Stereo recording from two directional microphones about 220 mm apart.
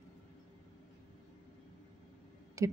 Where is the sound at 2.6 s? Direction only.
15° right (ahead or behind).